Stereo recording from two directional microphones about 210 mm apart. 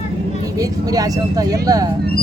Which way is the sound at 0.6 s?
15° right (ahead or behind).